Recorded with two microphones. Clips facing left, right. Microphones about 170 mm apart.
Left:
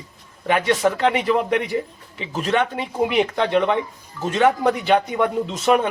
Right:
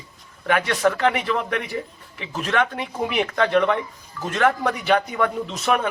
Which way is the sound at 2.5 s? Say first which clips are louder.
Left 2 dB; 15° left (ahead or behind).